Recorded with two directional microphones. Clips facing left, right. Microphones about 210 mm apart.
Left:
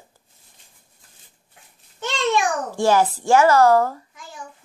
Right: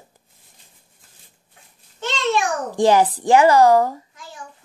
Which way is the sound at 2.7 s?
15° right (ahead or behind).